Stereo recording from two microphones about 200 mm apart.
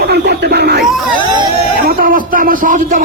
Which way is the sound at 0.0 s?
55° right (ahead or behind).